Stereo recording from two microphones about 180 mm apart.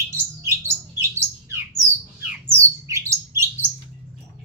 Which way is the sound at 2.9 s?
15° right (ahead or behind).